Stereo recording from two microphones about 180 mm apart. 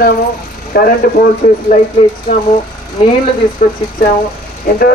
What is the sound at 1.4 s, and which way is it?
Speech, 45° left (ahead or behind).